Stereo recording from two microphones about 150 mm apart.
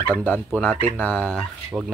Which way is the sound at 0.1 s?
10° left (ahead or behind).